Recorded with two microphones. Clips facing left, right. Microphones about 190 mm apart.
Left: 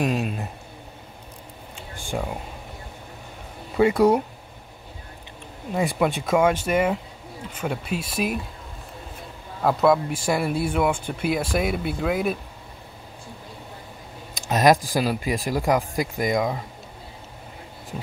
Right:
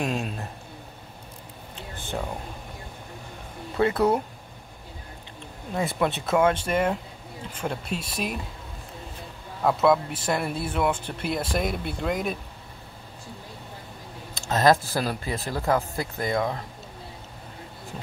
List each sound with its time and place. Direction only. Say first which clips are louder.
0.0 s a sound: left 4 dB; centre (ahead or behind)
1.8 s a sound: left 3 dB; 10° left (ahead or behind)
3.7 s speech: left 4 dB; 10° left (ahead or behind)
5.9 s speech: left 2 dB; 5° left (ahead or behind)
9.6 s speech: left 2 dB; centre (ahead or behind)
14.3 s speech: left 2 dB; 15° left (ahead or behind)